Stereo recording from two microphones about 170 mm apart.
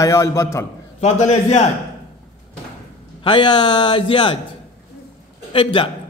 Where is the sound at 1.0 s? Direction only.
40° left (ahead or behind).